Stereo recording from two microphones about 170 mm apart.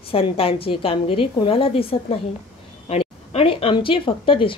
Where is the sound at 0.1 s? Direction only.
35° left (ahead or behind).